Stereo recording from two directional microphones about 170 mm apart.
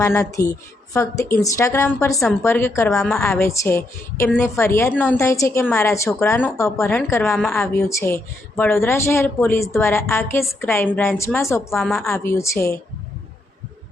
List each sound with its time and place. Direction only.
0.0 s speech: 15° left (ahead or behind)
2.9 s a woman's voice: centre (ahead or behind)
3.2 s speech: 15° left (ahead or behind)
7.6 s speech: 15° left (ahead or behind)
11.8 s a woman's voice: centre (ahead or behind)
12.1 s speech: 15° left (ahead or behind)